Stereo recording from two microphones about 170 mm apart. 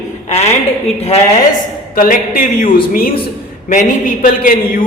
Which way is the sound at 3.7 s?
50° left (ahead or behind).